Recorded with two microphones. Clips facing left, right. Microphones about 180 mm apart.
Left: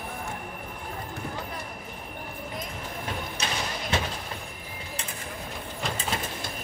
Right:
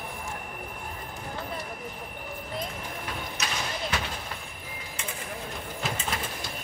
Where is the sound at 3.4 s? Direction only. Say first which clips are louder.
Left 2 dB; 30° left (ahead or behind).